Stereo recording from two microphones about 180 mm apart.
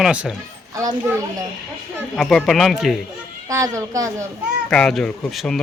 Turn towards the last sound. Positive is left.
turn(degrees=0)  # may be behind; listen again after turning